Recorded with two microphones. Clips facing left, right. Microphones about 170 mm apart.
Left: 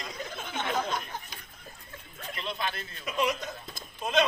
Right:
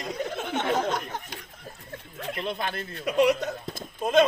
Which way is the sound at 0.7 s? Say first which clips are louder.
Right 5 dB; 40° right (ahead or behind).